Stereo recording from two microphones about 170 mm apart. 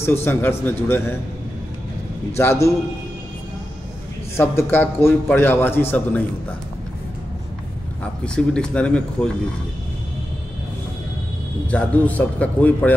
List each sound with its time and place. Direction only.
0.0 s a man's voice: 15° left (ahead or behind)
2.3 s a man's voice: 15° left (ahead or behind)
4.4 s a man's voice: 10° left (ahead or behind)
8.5 s speech: 5° left (ahead or behind)
11.6 s a man's voice: 10° left (ahead or behind)